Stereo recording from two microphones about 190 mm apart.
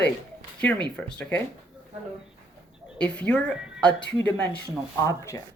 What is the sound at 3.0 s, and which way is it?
Speech, 5° left (ahead or behind).